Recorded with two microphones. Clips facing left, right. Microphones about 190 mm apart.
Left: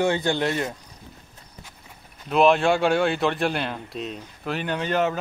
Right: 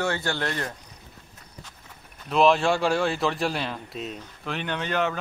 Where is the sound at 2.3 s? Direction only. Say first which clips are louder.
Left 2 dB; centre (ahead or behind).